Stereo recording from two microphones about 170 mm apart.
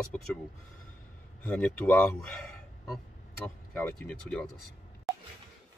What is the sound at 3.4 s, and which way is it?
Speech, 10° left (ahead or behind).